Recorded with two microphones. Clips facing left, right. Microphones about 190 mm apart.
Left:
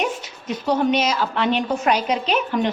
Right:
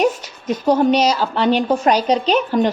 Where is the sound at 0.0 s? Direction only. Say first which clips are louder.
Right 7 dB; 40° right (ahead or behind).